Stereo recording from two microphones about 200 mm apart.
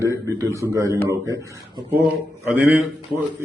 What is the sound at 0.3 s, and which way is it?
A man's voice, 15° right (ahead or behind).